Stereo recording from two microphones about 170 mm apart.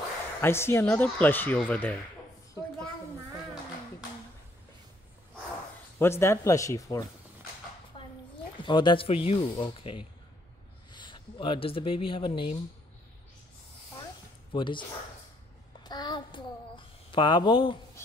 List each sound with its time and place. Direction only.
0.4 s speech: 15° left (ahead or behind)
5.9 s speech: 15° left (ahead or behind)
8.6 s speech: 25° left (ahead or behind)
14.5 s speech: 30° left (ahead or behind)
15.8 s a sound: 25° left (ahead or behind)